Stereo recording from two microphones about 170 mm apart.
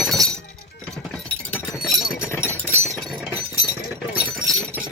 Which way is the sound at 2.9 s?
5° right (ahead or behind).